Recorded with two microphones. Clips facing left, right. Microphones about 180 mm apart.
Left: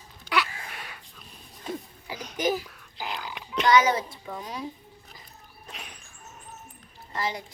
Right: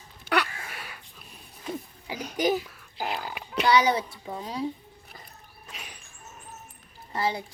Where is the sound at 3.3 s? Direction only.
5° right (ahead or behind).